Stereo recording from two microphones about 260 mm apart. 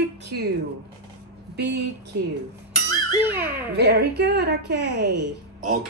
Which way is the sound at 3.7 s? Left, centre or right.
Right.